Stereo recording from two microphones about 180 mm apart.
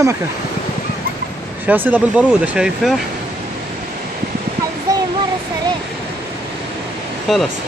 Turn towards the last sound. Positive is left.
turn(degrees=0)  # may be behind; listen again after turning